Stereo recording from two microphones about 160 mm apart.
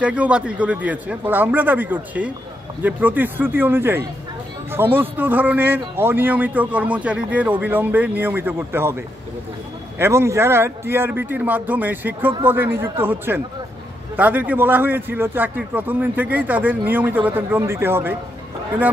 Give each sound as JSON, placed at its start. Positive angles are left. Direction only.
{"t": 0.0, "sound": "speech", "side_deg": -10}